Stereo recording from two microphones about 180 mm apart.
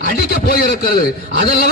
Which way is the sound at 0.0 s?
55° left (ahead or behind).